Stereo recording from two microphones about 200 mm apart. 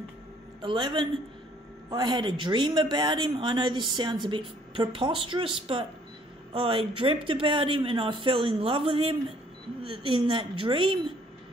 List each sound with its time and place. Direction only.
0.6 s speech: 25° right (ahead or behind)